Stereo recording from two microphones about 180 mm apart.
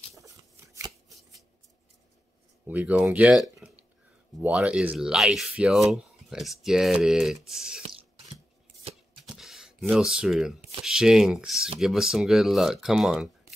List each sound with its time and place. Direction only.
0.1 s shuffling cards: 20° right (ahead or behind)
2.6 s speech: 10° right (ahead or behind)
9.3 s a sound: 5° right (ahead or behind)
10.8 s speech: 5° right (ahead or behind)